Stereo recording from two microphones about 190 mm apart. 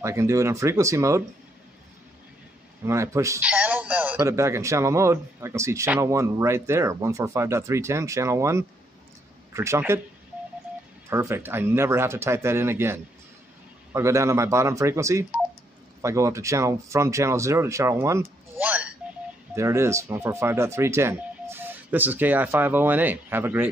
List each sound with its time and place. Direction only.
0.0 s a man's voice: 15° right (ahead or behind)
2.8 s a man's voice: 15° right (ahead or behind)
11.1 s a man's voice: 15° right (ahead or behind)